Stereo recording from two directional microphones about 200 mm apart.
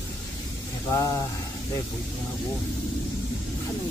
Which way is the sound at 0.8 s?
15° left (ahead or behind).